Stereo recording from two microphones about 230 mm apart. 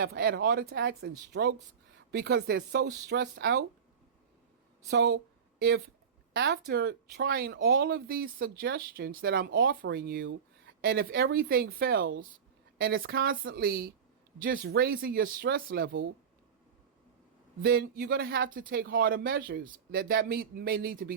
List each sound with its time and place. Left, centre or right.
0.2 s a woman's voice: right
4.9 s speech: right
10.8 s a sound: right
11.1 s a woman's voice: right
17.6 s speech: right